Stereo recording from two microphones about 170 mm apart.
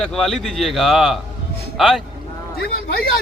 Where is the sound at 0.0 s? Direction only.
Centre (ahead or behind).